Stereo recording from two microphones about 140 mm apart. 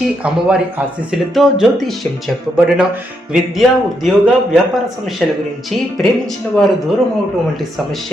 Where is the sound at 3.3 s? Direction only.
5° right (ahead or behind).